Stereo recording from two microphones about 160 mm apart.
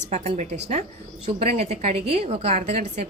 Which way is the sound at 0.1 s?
45° right (ahead or behind).